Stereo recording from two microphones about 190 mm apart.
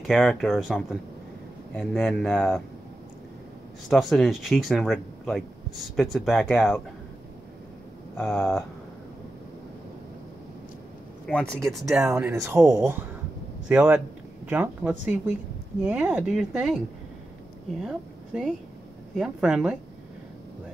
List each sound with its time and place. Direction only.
0.0 s speech: centre (ahead or behind)
3.9 s speech: centre (ahead or behind)
11.2 s speech: 5° left (ahead or behind)
12.0 s a woman's voice: 15° right (ahead or behind)